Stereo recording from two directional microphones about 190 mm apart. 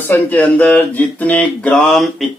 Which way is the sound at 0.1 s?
10° left (ahead or behind).